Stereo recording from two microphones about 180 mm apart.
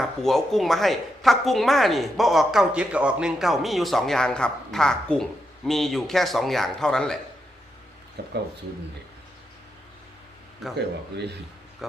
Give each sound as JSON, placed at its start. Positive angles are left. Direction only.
{"t": 0.0, "sound": "speech", "side_deg": 0}
{"t": 8.2, "sound": "speech", "side_deg": -70}
{"t": 10.6, "sound": "speech", "side_deg": 0}
{"t": 11.8, "sound": "speech", "side_deg": 0}